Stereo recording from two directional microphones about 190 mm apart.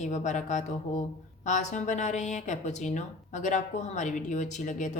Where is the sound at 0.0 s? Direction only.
40° left (ahead or behind).